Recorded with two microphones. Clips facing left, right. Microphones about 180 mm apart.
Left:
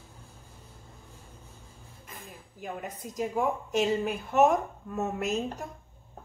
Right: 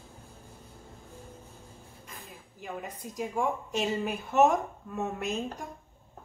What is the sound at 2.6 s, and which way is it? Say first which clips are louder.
A woman's voice: left 1 dB; centre (ahead or behind).